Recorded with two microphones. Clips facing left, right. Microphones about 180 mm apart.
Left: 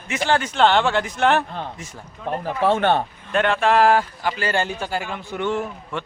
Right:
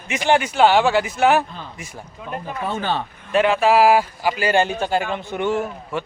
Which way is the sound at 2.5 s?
85° left.